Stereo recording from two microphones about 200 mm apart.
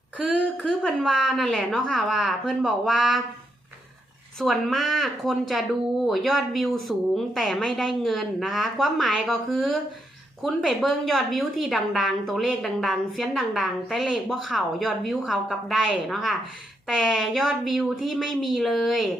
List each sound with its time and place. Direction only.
0.2 s a woman's voice: 5° left (ahead or behind)
4.4 s a woman's voice: centre (ahead or behind)